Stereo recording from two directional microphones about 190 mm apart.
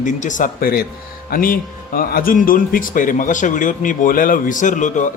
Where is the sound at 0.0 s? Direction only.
40° left (ahead or behind).